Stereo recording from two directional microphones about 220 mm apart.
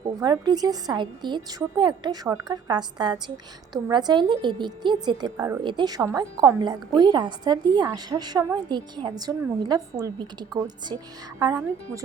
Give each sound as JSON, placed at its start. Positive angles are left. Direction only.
{"t": 0.0, "sound": "a woman's voice", "side_deg": -15}